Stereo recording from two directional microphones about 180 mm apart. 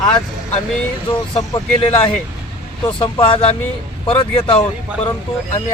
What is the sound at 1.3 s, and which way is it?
Speech, 25° left (ahead or behind).